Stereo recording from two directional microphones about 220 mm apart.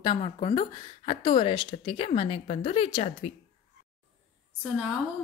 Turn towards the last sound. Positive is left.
turn(degrees=0)  # may be behind; listen again after turning